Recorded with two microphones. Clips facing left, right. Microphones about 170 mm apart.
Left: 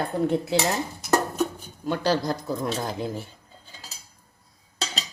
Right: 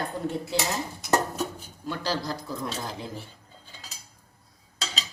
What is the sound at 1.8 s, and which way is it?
Speech, 55° left (ahead or behind).